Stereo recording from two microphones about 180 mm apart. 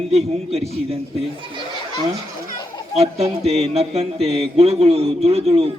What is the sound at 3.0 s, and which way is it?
A man's voice, 35° right (ahead or behind).